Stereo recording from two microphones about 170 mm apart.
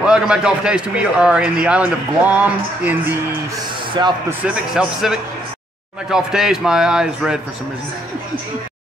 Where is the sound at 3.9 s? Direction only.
25° right (ahead or behind).